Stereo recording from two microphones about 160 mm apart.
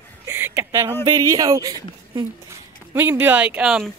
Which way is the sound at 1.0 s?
20° right (ahead or behind).